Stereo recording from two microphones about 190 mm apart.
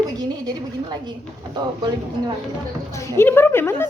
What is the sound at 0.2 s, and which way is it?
Speech, 20° right (ahead or behind).